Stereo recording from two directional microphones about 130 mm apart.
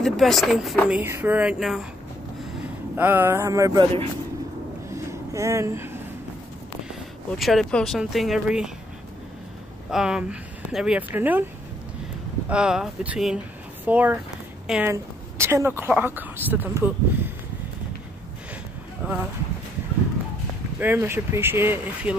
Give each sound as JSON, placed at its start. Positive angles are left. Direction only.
{"t": 0.0, "sound": "speech", "side_deg": 0}
{"t": 0.8, "sound": "speech", "side_deg": -10}
{"t": 3.0, "sound": "a sound", "side_deg": -15}
{"t": 4.9, "sound": "a sound", "side_deg": -25}
{"t": 7.2, "sound": "speech", "side_deg": 0}
{"t": 9.8, "sound": "speech", "side_deg": -5}
{"t": 12.4, "sound": "speech", "side_deg": -5}
{"t": 19.0, "sound": "speech", "side_deg": -10}
{"t": 20.8, "sound": "speech", "side_deg": -15}